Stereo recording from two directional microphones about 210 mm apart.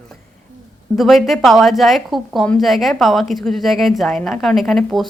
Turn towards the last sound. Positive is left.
turn(degrees=0)  # may be behind; listen again after turning